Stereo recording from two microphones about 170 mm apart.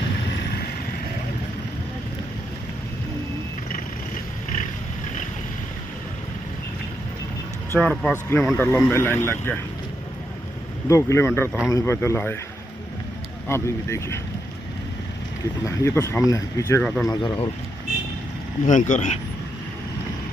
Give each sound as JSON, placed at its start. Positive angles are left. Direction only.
{"t": 7.8, "sound": "speech", "side_deg": 5}
{"t": 10.9, "sound": "speech", "side_deg": 15}
{"t": 13.5, "sound": "speech", "side_deg": 15}
{"t": 15.6, "sound": "speech", "side_deg": 15}
{"t": 18.7, "sound": "speech", "side_deg": 45}